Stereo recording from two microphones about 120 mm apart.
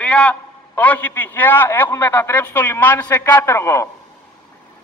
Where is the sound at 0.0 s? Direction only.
10° left (ahead or behind).